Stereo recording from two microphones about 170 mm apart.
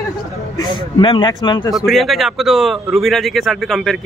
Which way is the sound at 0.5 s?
30° left (ahead or behind).